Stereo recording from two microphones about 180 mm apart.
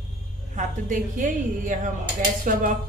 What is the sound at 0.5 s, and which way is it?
A woman's voice, 45° right (ahead or behind).